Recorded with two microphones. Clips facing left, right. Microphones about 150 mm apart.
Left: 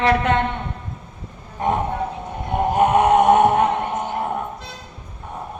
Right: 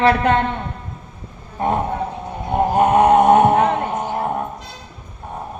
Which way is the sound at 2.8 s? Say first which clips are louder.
Right 2 dB; 35° right (ahead or behind).